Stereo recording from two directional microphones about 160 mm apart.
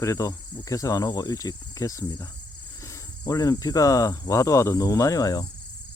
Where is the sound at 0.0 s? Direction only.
20° left (ahead or behind).